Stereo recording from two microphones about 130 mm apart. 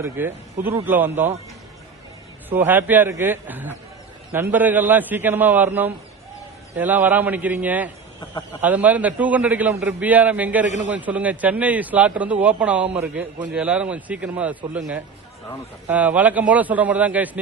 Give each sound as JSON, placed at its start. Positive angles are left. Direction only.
{"t": 0.0, "sound": "a man's voice", "side_deg": -15}
{"t": 2.5, "sound": "a man's voice", "side_deg": -15}